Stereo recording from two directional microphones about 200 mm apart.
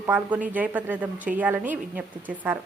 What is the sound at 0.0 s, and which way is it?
A woman's voice, 10° right (ahead or behind).